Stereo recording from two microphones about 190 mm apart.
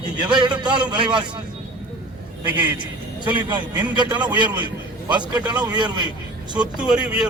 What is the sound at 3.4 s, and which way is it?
A man's voice, 25° right (ahead or behind).